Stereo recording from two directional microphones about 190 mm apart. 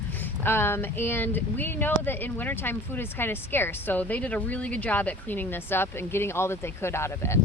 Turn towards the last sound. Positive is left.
turn(degrees=15)  # may be behind; listen again after turning